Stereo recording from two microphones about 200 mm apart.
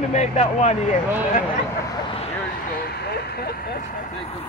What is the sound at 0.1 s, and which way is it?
Speech, 35° left (ahead or behind).